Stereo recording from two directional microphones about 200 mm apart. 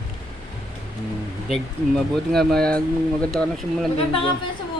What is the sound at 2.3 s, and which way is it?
Speech, 5° left (ahead or behind).